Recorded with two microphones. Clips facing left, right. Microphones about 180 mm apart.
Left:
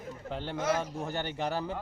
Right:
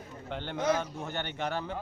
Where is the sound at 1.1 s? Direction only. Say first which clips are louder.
Left 2 dB; 35° left (ahead or behind).